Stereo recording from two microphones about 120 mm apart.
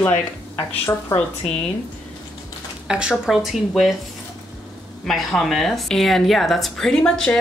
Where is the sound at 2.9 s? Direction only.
5° right (ahead or behind).